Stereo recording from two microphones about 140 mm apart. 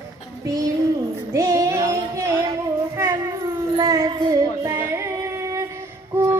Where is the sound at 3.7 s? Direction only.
25° right (ahead or behind).